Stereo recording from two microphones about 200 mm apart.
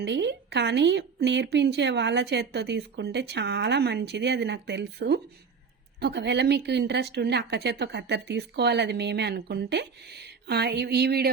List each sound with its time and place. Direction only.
0.0 s speech: 60° right (ahead or behind)